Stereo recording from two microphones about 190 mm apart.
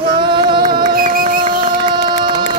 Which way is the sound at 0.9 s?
50° right (ahead or behind).